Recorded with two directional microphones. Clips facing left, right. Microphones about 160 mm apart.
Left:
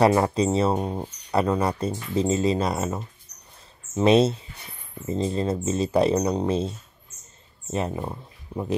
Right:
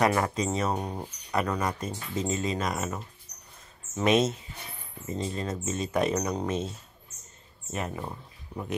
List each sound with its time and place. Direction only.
0.0 s speech: 30° left (ahead or behind)
7.7 s speech: 25° left (ahead or behind)